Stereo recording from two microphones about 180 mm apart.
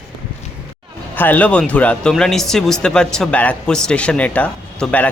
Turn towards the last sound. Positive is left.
turn(degrees=10)  # may be behind; listen again after turning